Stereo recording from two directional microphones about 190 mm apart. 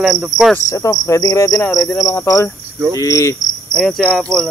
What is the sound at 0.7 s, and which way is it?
Cricket, 15° left (ahead or behind).